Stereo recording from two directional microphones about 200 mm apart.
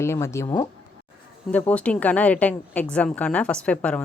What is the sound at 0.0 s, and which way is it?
Speech, 15° left (ahead or behind).